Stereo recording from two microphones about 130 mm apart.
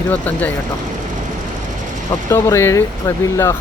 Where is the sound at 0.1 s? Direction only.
10° left (ahead or behind).